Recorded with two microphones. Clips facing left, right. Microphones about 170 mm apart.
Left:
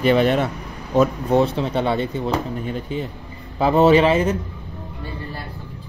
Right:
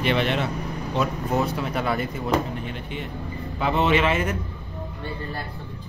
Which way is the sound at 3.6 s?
35° left (ahead or behind).